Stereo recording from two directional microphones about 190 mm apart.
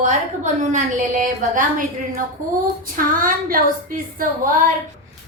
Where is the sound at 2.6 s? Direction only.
45° right (ahead or behind).